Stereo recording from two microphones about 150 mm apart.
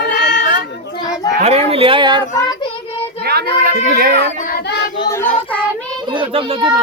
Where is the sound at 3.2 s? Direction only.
80° right.